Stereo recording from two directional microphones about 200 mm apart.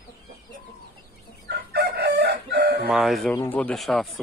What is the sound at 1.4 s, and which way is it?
Chicken, 55° right (ahead or behind).